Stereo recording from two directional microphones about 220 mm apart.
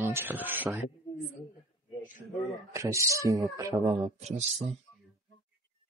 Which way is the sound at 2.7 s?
15° right (ahead or behind).